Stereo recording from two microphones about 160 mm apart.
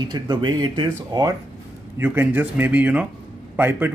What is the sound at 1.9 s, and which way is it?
Speech, 15° right (ahead or behind).